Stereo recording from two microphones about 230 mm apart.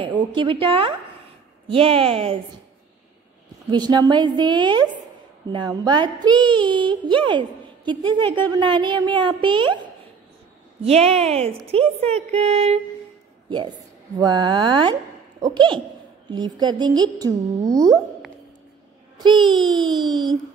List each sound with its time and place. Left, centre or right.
0.0 s a woman's voice: centre
3.7 s a woman's voice: centre
10.8 s a woman's voice: right
14.2 s a woman's voice: centre
19.1 s a sound: centre
19.7 s a woman's voice: centre